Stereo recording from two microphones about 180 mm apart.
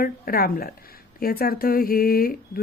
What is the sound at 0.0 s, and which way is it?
A woman's voice, 55° left (ahead or behind).